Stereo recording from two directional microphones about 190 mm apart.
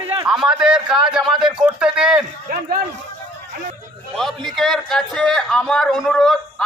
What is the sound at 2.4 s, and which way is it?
Speech, 50° right (ahead or behind).